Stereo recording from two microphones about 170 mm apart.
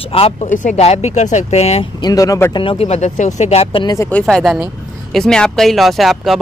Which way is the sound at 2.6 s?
35° left (ahead or behind).